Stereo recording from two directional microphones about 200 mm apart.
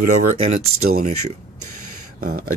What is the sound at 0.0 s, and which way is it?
Speech, 35° right (ahead or behind).